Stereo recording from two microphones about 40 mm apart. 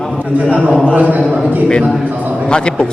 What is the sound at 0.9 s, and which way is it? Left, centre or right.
Speech, right.